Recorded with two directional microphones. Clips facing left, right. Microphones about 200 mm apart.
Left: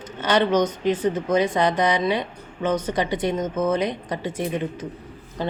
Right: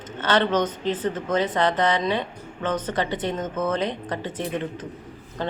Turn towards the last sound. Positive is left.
turn(degrees=10)  # may be behind; listen again after turning